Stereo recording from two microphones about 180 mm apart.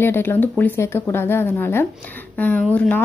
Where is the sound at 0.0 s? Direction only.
10° left (ahead or behind).